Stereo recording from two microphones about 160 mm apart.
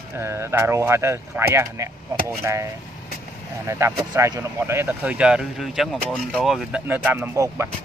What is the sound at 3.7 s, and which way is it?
Speech, 20° right (ahead or behind).